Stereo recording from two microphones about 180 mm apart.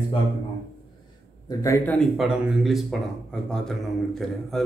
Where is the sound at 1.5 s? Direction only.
15° left (ahead or behind).